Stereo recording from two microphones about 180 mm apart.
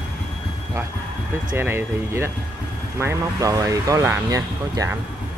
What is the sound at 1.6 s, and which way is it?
Speech, 15° right (ahead or behind).